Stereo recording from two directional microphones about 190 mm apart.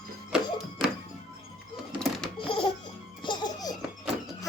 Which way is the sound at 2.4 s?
25° left (ahead or behind).